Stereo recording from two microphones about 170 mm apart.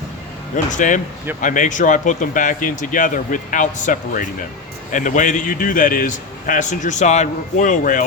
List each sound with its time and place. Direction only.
0.5 s speech: 45° left (ahead or behind)